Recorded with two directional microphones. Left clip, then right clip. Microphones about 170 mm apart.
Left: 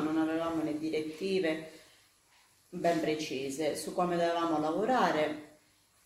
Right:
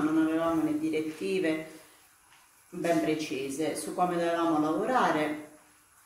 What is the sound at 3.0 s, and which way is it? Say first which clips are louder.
Speech: right 3 dB; 20° left (ahead or behind).